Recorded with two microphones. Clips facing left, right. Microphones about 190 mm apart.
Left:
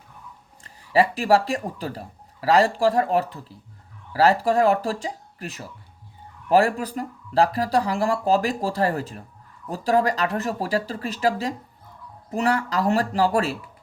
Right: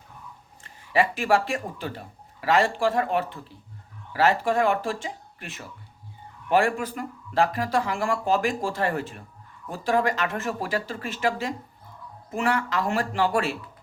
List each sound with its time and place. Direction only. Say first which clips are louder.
0.6 s speech: left 3 dB; 35° left (ahead or behind)